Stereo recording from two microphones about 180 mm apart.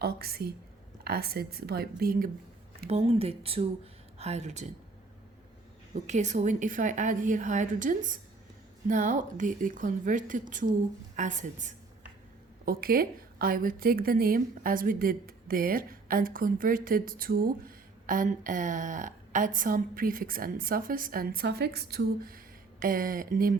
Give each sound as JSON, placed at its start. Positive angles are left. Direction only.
{"t": 0.0, "sound": "a woman's voice", "side_deg": -60}
{"t": 2.9, "sound": "speech", "side_deg": -35}
{"t": 5.9, "sound": "a woman's voice", "side_deg": -40}
{"t": 12.6, "sound": "a woman's voice", "side_deg": -55}